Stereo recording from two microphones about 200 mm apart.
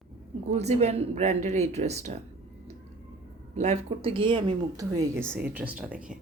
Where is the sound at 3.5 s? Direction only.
35° right (ahead or behind); by 6.1 s 5° right (ahead or behind).